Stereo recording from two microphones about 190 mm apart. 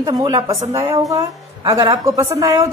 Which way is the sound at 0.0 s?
20° right (ahead or behind).